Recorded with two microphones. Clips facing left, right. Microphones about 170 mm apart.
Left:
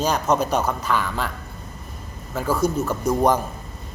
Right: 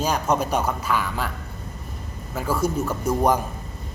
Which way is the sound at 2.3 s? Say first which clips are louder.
Left 2 dB; 10° right (ahead or behind).